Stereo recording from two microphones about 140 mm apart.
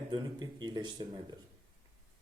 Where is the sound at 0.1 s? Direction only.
30° right (ahead or behind).